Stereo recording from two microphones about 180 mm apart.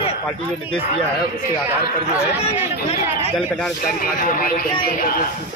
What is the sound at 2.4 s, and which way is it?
Speech, 35° left (ahead or behind).